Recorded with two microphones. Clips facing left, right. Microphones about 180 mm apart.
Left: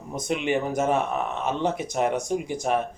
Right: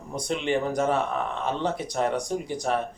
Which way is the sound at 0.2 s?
15° left (ahead or behind).